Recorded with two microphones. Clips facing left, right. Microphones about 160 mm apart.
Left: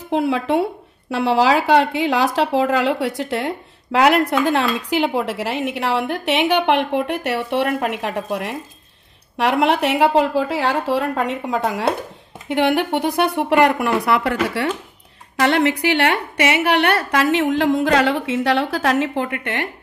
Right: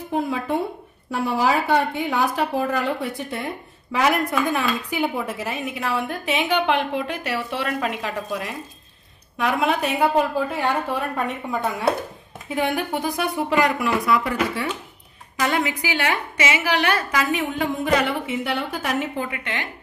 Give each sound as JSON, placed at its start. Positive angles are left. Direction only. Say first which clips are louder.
{"t": 0.1, "sound": "a woman's voice", "louder": "left 5 dB", "side_deg": 80}
{"t": 9.4, "sound": "a woman's voice", "louder": "left 5 dB", "side_deg": 75}
{"t": 19.2, "sound": "speech", "louder": "left 5 dB", "side_deg": 55}